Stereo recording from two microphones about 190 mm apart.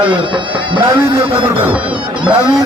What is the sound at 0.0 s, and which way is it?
A man's voice, 25° right (ahead or behind).